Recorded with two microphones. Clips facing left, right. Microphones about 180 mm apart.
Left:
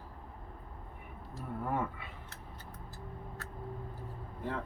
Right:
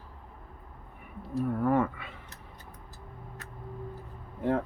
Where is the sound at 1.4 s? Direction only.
70° right (ahead or behind).